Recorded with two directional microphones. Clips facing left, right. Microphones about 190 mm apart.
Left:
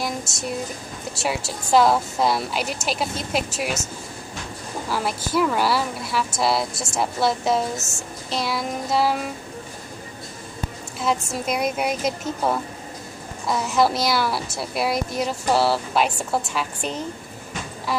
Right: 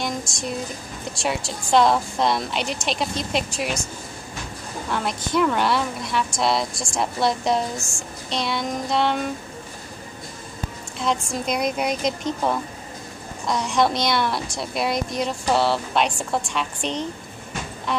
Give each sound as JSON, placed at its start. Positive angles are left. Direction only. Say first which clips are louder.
{"t": 0.0, "sound": "a sound", "louder": "even", "side_deg": 5}
{"t": 1.2, "sound": "a woman's voice", "louder": "even", "side_deg": 5}
{"t": 4.8, "sound": "a woman's voice", "louder": "even", "side_deg": 5}
{"t": 7.7, "sound": "a woman's voice", "louder": "left 1 dB", "side_deg": 20}
{"t": 8.3, "sound": "a woman's voice", "louder": "even", "side_deg": 5}
{"t": 11.0, "sound": "a woman's voice", "louder": "even", "side_deg": 5}